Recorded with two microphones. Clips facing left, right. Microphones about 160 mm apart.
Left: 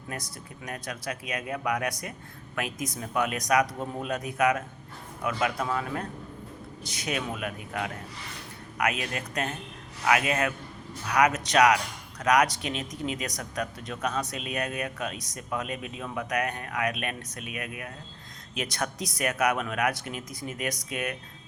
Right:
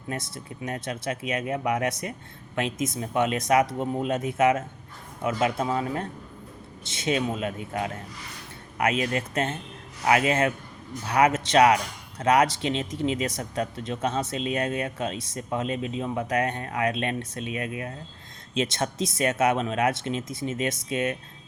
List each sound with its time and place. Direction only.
0.1 s speech: 25° right (ahead or behind)